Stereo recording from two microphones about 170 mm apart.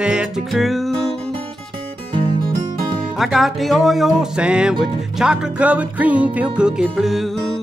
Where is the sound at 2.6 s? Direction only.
25° right (ahead or behind).